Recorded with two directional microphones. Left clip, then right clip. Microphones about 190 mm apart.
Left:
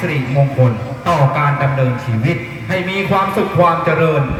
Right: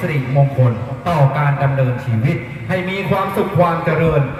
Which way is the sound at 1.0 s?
15° left (ahead or behind).